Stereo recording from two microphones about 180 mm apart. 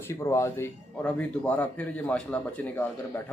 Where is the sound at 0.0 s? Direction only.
15° left (ahead or behind).